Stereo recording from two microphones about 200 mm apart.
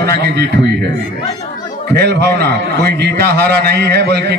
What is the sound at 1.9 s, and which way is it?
A man's voice, 55° right (ahead or behind).